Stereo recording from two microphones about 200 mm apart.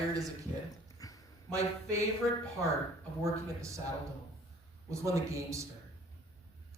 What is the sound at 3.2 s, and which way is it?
Speech, 15° right (ahead or behind).